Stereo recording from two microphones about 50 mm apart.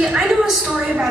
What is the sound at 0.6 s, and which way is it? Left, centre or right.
Speech, right.